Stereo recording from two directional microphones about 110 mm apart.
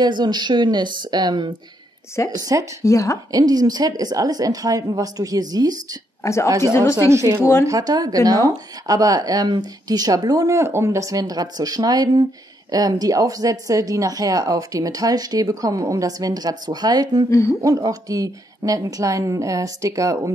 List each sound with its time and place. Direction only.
0.0 s speech: 40° right (ahead or behind)
2.8 s speech: 30° left (ahead or behind)
3.3 s speech: 35° right (ahead or behind)
6.2 s speech: 25° left (ahead or behind)
7.1 s a woman's voice: 25° right (ahead or behind)